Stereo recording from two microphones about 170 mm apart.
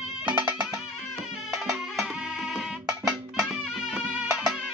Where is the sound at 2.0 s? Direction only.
Centre (ahead or behind).